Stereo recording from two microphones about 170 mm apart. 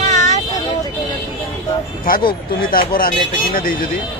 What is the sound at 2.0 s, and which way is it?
Speech, 55° left (ahead or behind).